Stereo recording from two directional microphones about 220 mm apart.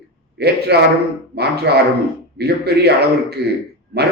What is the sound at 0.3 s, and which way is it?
A man's voice, 50° right (ahead or behind).